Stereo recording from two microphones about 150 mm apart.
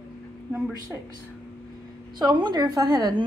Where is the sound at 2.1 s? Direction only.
30° right (ahead or behind).